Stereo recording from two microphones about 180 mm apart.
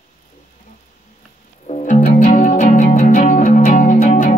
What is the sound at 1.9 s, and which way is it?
Music, 45° left (ahead or behind).